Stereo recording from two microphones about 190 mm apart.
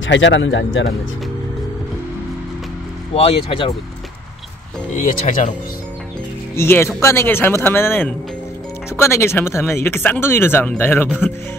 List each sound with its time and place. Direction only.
0.0 s speech: 75° left (ahead or behind)
3.2 s speech: 30° left (ahead or behind)
4.9 s speech: 40° left (ahead or behind)
6.5 s speech: 15° left (ahead or behind)